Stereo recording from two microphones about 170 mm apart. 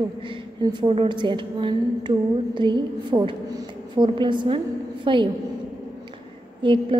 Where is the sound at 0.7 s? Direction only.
30° right (ahead or behind).